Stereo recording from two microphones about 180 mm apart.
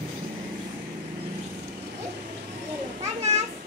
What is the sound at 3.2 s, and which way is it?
Children playing, 40° right (ahead or behind).